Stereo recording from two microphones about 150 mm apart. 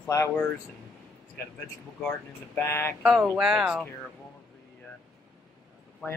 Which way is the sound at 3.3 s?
5° right (ahead or behind).